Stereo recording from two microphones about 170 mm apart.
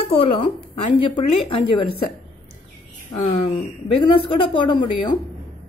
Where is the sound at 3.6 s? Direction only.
30° left (ahead or behind).